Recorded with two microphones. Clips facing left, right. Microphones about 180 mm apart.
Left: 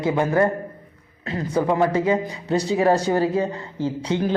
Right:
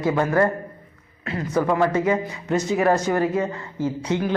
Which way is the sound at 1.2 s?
35° left (ahead or behind).